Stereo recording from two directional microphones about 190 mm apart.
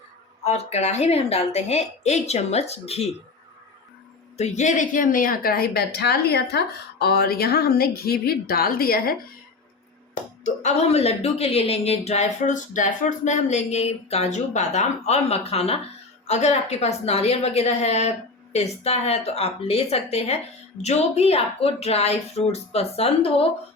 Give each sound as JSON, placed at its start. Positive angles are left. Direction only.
{"t": 0.4, "sound": "speech", "side_deg": 35}
{"t": 4.4, "sound": "a woman's voice", "side_deg": 35}
{"t": 10.4, "sound": "speech", "side_deg": 40}